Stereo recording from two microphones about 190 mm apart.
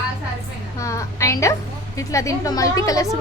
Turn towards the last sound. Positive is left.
turn(degrees=15)  # may be behind; listen again after turning